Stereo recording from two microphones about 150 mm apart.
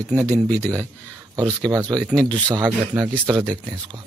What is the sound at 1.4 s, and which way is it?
Speech, 25° right (ahead or behind).